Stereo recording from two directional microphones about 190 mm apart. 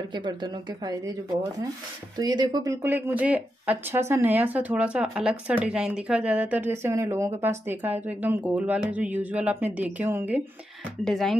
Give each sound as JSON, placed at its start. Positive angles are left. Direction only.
{"t": 0.1, "sound": "speech", "side_deg": -25}
{"t": 11.1, "sound": "speech", "side_deg": 0}